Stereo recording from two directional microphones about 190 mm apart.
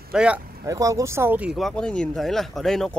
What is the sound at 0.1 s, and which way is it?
Speech, 5° right (ahead or behind).